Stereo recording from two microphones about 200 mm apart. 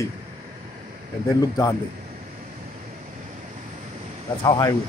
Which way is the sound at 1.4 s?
20° left (ahead or behind).